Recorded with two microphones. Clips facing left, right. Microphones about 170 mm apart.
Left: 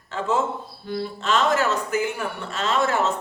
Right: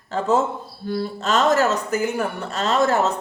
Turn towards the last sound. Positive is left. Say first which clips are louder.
# right 3 dB
turn(degrees=-40)  # may be behind; listen again after turning